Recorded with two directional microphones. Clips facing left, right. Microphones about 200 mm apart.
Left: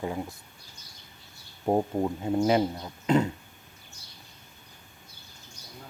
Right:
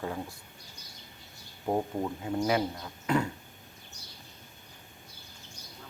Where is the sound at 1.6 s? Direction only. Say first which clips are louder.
Left 5 dB; 25° left (ahead or behind).